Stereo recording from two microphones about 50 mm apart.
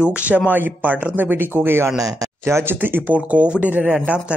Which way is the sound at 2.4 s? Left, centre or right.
Right.